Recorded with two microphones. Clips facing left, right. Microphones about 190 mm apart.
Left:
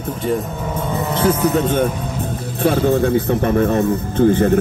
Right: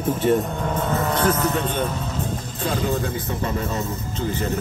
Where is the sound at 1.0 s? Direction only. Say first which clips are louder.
Left 6 dB; 15° left (ahead or behind).